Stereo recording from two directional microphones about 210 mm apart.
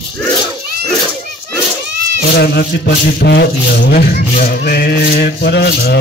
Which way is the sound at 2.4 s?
50° left (ahead or behind).